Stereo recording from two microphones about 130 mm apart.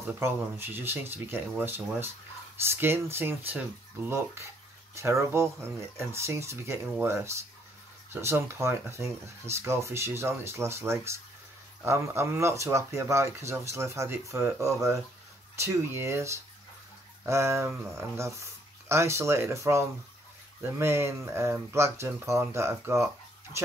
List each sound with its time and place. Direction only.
0.2 s speech: 20° right (ahead or behind)